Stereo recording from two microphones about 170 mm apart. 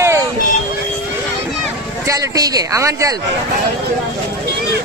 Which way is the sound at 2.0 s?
20° right (ahead or behind).